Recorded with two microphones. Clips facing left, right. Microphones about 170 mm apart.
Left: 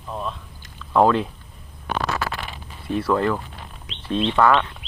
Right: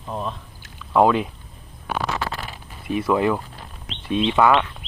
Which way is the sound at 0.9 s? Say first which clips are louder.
Even; 5° right (ahead or behind).